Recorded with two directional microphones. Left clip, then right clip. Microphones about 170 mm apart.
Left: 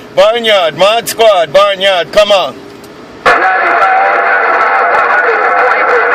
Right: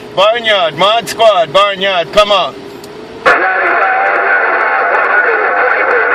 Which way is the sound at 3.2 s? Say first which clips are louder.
Left 2 dB; 45° left (ahead or behind).